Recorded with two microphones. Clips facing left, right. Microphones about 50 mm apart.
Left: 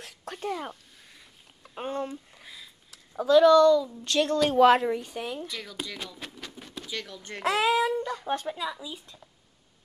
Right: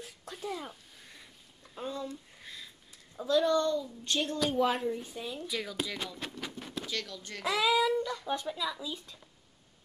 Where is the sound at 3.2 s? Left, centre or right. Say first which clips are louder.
Left 10 dB; left.